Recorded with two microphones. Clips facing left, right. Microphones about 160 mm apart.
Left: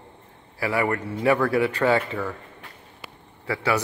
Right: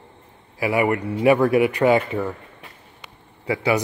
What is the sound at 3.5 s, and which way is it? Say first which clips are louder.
Speech: right 4 dB; 15° right (ahead or behind).